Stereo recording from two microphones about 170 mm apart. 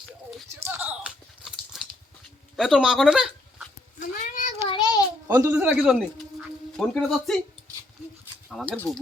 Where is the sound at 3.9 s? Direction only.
50° left (ahead or behind).